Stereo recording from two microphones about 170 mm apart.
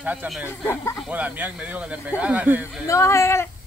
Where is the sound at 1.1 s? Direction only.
10° right (ahead or behind).